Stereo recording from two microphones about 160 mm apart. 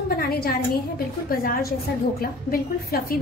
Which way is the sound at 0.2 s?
75° left (ahead or behind).